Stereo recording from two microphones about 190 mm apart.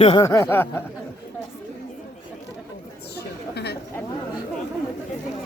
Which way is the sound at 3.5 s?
60° left (ahead or behind).